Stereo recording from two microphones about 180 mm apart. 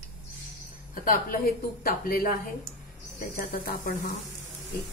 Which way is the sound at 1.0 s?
50° left (ahead or behind).